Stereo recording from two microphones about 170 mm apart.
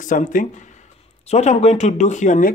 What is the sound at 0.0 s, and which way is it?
Speech, 50° left (ahead or behind).